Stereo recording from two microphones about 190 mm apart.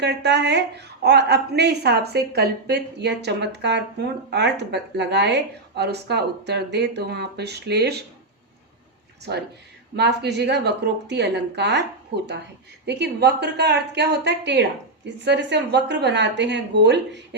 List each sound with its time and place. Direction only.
0.0 s a woman's voice: 65° right (ahead or behind)
9.3 s a woman's voice: 55° right (ahead or behind)